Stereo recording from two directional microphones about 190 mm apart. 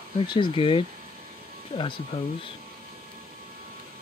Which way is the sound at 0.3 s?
25° left (ahead or behind).